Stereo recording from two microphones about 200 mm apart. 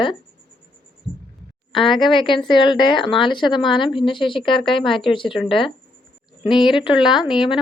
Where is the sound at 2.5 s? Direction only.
25° left (ahead or behind).